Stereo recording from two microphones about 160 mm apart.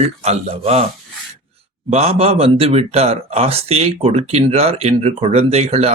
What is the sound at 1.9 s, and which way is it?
Speech, 40° right (ahead or behind).